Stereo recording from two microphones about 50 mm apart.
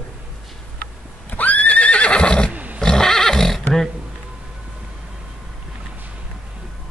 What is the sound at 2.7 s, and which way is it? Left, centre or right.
Neigh, centre.